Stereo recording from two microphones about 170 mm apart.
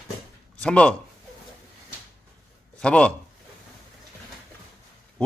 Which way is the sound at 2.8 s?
5° left (ahead or behind).